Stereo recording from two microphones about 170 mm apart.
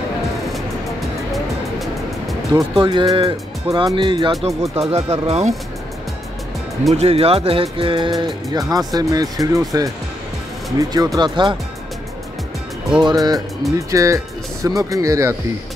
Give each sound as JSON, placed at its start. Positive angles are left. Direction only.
{"t": 1.3, "sound": "music", "side_deg": 0}
{"t": 2.8, "sound": "speech", "side_deg": -25}
{"t": 4.7, "sound": "speech", "side_deg": -35}
{"t": 6.9, "sound": "speech", "side_deg": -35}
{"t": 13.0, "sound": "speech", "side_deg": -20}